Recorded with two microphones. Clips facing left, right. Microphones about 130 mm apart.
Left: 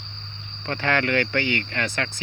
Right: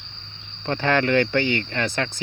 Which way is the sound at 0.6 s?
25° right (ahead or behind).